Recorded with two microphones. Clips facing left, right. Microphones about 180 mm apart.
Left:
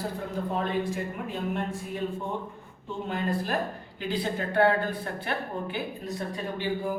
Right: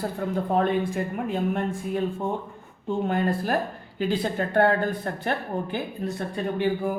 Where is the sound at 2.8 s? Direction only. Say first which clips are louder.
Right 6 dB; 50° right (ahead or behind).